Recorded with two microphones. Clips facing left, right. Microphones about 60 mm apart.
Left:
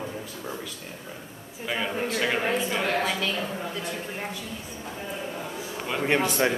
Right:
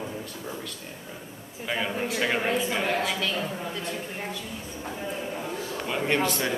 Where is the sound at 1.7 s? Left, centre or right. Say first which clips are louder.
Left 1 dB; centre.